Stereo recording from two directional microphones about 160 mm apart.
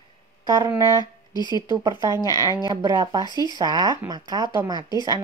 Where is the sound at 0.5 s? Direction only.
20° right (ahead or behind).